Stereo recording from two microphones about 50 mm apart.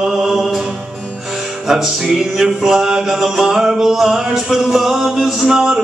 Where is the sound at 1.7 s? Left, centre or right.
Centre.